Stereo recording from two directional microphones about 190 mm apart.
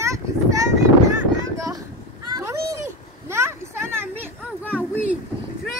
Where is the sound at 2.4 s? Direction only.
15° right (ahead or behind).